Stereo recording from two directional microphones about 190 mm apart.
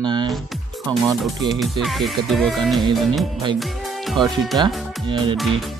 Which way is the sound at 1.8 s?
Centre (ahead or behind).